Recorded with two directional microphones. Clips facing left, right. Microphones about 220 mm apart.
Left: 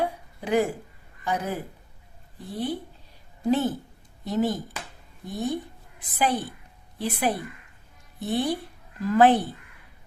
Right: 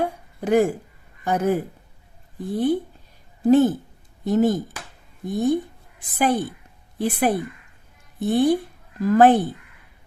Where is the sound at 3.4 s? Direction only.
50° right (ahead or behind).